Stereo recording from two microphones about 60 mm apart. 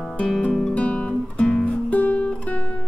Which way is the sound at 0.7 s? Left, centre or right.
Centre.